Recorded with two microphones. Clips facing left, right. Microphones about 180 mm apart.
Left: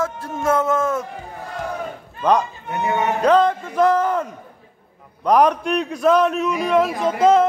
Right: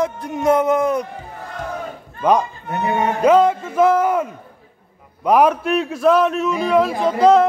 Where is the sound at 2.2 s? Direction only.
10° right (ahead or behind).